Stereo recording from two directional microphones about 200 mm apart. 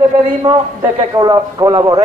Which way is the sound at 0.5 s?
20° right (ahead or behind).